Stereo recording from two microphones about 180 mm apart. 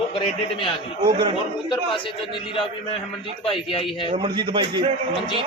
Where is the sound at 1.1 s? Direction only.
25° right (ahead or behind).